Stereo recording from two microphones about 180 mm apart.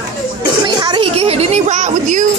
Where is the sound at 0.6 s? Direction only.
25° right (ahead or behind); by 2.2 s 40° right (ahead or behind).